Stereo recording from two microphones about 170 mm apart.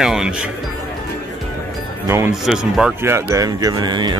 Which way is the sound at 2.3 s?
5° right (ahead or behind).